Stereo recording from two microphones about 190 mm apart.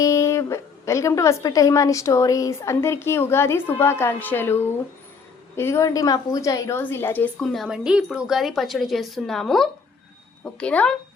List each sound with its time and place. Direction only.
0.0 s a woman's voice: 15° left (ahead or behind)